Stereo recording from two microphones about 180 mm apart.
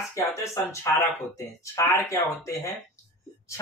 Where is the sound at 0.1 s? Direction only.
15° left (ahead or behind).